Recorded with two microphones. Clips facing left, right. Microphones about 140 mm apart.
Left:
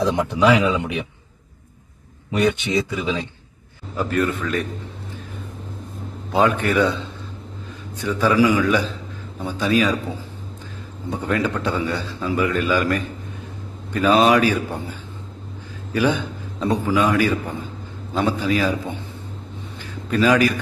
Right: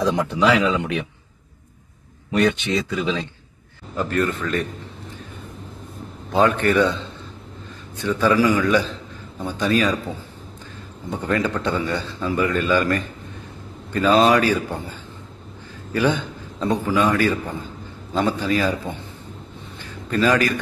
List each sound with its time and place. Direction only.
0.4 s a man's voice: 15° left (ahead or behind)
2.3 s a man's voice: 10° left (ahead or behind)
6.3 s a man's voice: 10° left (ahead or behind)
8.0 s a man's voice: 10° left (ahead or behind)
11.1 s a man's voice: 10° left (ahead or behind)
19.8 s a sound: 10° left (ahead or behind)